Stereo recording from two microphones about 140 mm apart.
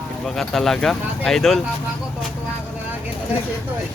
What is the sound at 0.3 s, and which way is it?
Speech, centre (ahead or behind).